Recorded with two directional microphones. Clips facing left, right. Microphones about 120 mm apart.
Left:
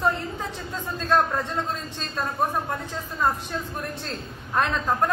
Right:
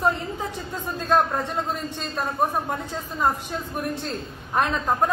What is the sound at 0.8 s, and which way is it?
A man's voice, 15° right (ahead or behind).